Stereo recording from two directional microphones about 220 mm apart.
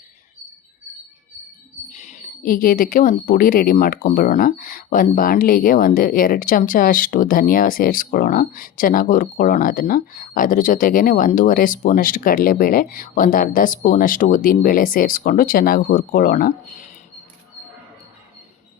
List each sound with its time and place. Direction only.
1.9 s speech: 35° left (ahead or behind)